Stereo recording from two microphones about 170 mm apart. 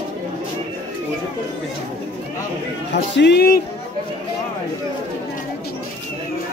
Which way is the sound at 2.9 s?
85° left.